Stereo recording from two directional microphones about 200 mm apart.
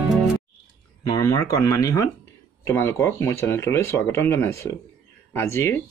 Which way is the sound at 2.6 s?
10° left (ahead or behind).